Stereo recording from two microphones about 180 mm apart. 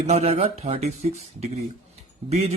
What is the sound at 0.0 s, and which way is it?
Speech, 35° right (ahead or behind).